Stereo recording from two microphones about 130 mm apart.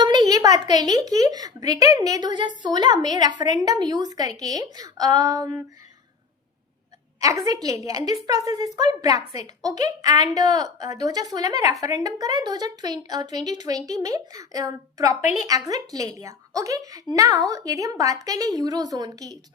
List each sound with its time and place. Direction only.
0.0 s a sound: 35° right (ahead or behind)
0.7 s a woman's voice: 30° right (ahead or behind)
7.2 s a woman's voice: 25° right (ahead or behind)